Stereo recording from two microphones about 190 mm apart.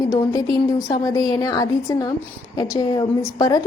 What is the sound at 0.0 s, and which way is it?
A woman's voice, 15° left (ahead or behind).